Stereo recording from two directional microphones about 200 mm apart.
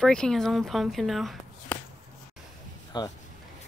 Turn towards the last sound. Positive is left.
turn(degrees=20)  # may be behind; listen again after turning